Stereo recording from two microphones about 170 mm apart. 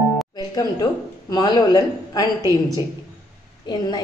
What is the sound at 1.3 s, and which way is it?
Speech, 25° left (ahead or behind).